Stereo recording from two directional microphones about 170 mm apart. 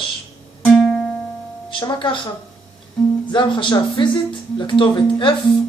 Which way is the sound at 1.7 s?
25° left (ahead or behind).